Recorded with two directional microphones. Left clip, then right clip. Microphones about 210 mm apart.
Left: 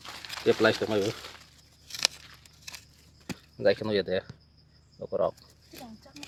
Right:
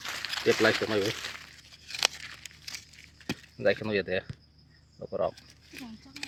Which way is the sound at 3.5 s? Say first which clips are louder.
Left 2 dB; 10° left (ahead or behind).